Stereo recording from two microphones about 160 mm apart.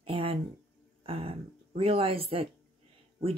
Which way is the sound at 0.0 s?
35° right (ahead or behind).